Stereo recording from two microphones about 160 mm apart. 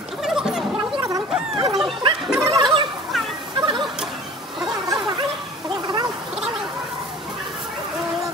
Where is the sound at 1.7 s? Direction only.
Centre (ahead or behind).